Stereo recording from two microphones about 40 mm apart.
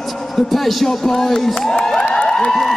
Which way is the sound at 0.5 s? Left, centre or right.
Centre.